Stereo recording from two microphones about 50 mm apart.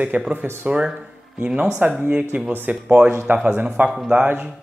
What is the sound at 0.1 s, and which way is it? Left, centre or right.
Speech, right.